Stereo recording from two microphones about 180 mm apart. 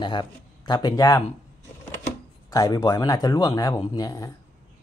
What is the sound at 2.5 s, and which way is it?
Speech, 20° left (ahead or behind).